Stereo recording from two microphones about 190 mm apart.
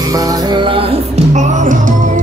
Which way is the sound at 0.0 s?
20° right (ahead or behind).